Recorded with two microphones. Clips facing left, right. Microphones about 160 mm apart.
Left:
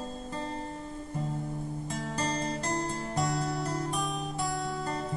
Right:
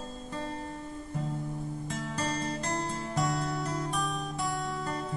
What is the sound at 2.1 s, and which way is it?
Music, 35° left (ahead or behind).